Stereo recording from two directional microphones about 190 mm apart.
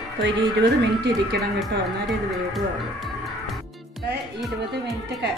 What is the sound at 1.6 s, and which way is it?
Speech, centre (ahead or behind).